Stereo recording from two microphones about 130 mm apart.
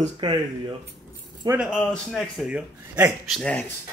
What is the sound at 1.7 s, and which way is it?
Speech, 5° left (ahead or behind).